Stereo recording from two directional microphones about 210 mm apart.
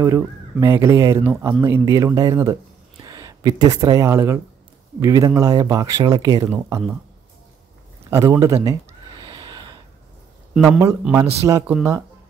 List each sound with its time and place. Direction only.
0.0 s speech: 15° right (ahead or behind)
8.1 s speech: 15° right (ahead or behind)
9.2 s gasp: 20° right (ahead or behind)
10.8 s speech: 10° right (ahead or behind)